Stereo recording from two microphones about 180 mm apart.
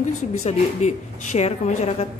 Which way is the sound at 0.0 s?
40° left (ahead or behind).